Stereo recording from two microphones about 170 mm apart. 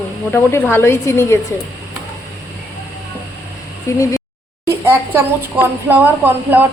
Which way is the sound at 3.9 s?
15° left (ahead or behind).